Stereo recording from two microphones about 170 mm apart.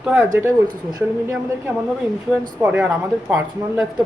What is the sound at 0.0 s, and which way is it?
Speech, 15° right (ahead or behind).